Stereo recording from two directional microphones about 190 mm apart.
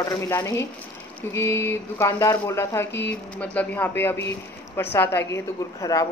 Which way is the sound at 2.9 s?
65° left (ahead or behind).